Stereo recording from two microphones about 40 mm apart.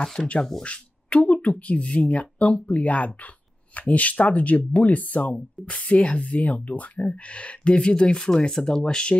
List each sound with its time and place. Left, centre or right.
0.2 s speech: centre
0.7 s speech: left